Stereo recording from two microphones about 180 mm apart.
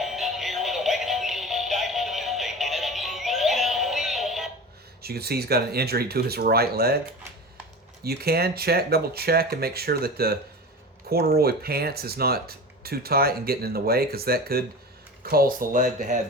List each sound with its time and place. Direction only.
0.0 s music: centre (ahead or behind)
5.0 s speech: 60° right (ahead or behind)
8.0 s speech: 60° right (ahead or behind)